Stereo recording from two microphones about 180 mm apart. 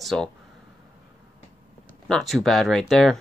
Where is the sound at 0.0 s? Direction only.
Centre (ahead or behind).